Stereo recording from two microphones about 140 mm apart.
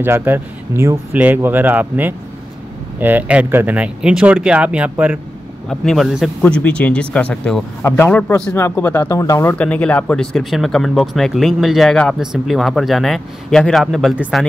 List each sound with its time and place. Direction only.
0.0 s speech: 15° right (ahead or behind)
5.7 s speech: centre (ahead or behind)
6.4 s speech: 10° left (ahead or behind)
9.6 s speech: 10° left (ahead or behind)